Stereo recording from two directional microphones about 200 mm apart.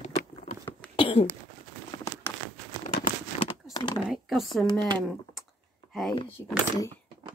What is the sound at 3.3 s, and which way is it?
Crumpling, 35° left (ahead or behind).